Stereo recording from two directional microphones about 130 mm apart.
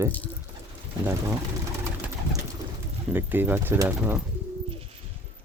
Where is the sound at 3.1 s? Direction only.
15° right (ahead or behind).